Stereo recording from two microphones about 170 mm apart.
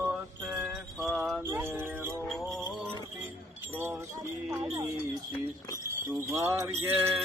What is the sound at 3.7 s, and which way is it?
Jingle bell, 15° right (ahead or behind).